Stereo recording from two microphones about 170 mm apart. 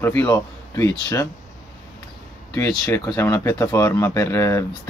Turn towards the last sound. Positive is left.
turn(degrees=15)  # may be behind; listen again after turning